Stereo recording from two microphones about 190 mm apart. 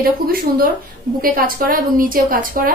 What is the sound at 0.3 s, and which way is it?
A woman's voice, 50° right (ahead or behind).